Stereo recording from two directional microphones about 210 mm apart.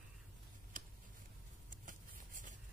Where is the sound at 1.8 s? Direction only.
40° right (ahead or behind).